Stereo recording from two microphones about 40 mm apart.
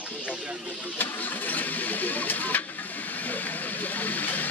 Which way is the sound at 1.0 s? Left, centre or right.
Left.